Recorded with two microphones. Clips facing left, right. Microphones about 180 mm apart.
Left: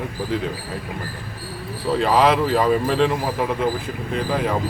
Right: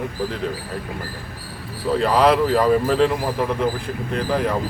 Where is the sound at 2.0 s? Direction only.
Centre (ahead or behind).